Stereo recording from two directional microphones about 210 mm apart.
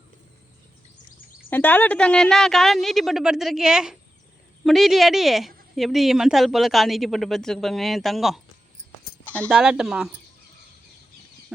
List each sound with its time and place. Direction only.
1.5 s a woman's voice: 10° left (ahead or behind)